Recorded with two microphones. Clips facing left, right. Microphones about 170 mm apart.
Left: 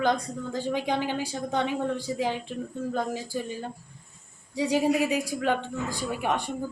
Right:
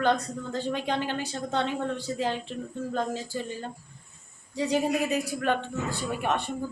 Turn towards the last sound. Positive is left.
turn(degrees=10)  # may be behind; listen again after turning